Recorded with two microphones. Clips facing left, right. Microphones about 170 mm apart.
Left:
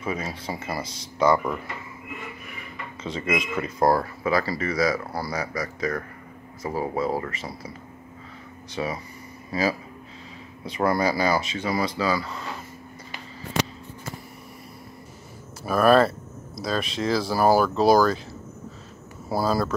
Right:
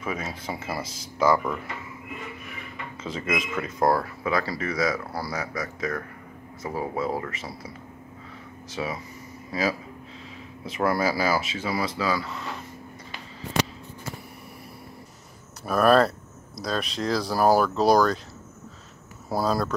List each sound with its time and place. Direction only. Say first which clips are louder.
0.0 s speech: left 2 dB; centre (ahead or behind)
3.0 s speech: left 2 dB; centre (ahead or behind)
8.7 s speech: left 2 dB; centre (ahead or behind)
15.6 s speech: left 1 dB; centre (ahead or behind)
19.2 s speech: left 1 dB; centre (ahead or behind)